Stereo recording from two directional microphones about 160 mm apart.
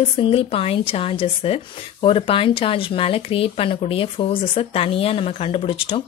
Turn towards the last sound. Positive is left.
turn(degrees=35)  # may be behind; listen again after turning